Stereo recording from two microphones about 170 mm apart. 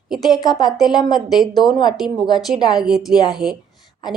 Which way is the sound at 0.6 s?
Centre (ahead or behind).